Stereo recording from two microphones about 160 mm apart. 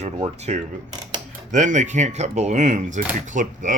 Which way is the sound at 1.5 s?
50° right (ahead or behind).